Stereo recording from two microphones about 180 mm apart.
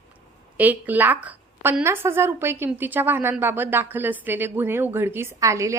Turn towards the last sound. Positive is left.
turn(degrees=-15)  # may be behind; listen again after turning